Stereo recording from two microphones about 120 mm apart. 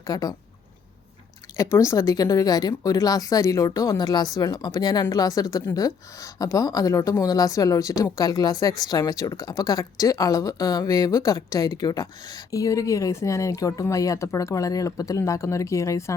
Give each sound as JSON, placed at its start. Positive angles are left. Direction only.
{"t": 0.1, "sound": "a woman's voice", "side_deg": 30}
{"t": 1.5, "sound": "a woman's voice", "side_deg": 25}